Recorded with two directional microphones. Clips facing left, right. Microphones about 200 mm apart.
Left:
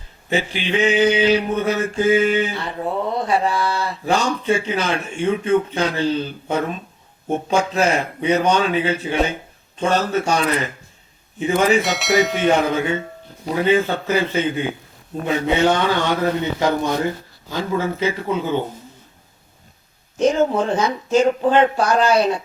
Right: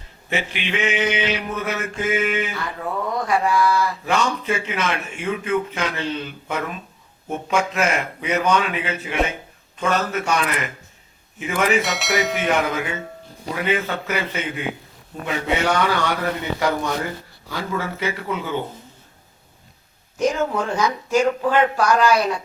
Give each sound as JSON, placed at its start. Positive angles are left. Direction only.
{"t": 0.3, "sound": "a sound", "side_deg": 30}
{"t": 11.8, "sound": "speech", "side_deg": 0}
{"t": 12.5, "sound": "speech", "side_deg": 30}
{"t": 20.1, "sound": "speech", "side_deg": 25}